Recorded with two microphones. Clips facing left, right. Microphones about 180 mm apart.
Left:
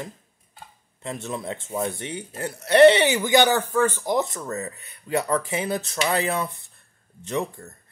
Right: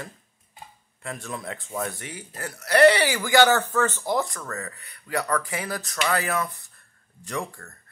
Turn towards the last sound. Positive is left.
turn(degrees=20)  # may be behind; listen again after turning